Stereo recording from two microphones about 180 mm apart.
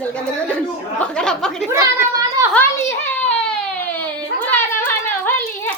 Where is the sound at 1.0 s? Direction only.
5° left (ahead or behind).